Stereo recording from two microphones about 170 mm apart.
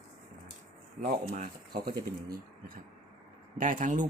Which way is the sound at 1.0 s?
55° right (ahead or behind).